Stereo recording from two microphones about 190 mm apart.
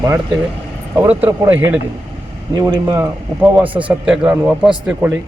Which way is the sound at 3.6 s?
5° right (ahead or behind).